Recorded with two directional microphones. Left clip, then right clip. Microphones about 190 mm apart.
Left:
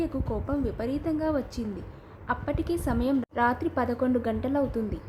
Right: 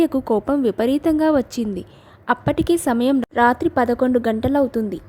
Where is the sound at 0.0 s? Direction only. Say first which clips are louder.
Right 13 dB; 45° right (ahead or behind).